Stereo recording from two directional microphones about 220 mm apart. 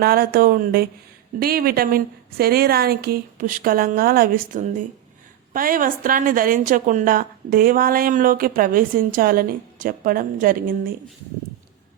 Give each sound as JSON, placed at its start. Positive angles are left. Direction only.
{"t": 0.0, "sound": "a woman's voice", "side_deg": -45}